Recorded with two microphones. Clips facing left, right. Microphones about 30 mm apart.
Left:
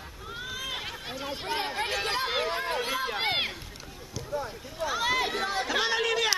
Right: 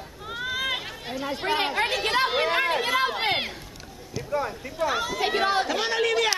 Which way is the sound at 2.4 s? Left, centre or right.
Right.